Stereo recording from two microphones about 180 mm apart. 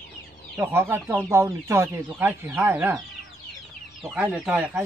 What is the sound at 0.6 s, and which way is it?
Speech, 10° right (ahead or behind).